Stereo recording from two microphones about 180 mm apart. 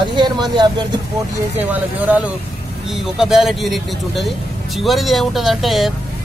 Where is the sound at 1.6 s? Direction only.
10° right (ahead or behind).